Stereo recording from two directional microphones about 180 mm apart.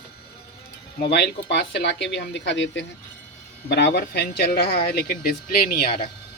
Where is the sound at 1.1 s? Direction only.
70° left (ahead or behind); by 2.9 s 85° left.